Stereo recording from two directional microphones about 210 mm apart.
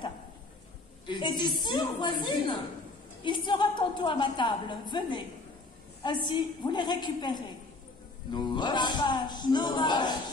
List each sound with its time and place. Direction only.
1.0 s a woman's voice: 20° left (ahead or behind)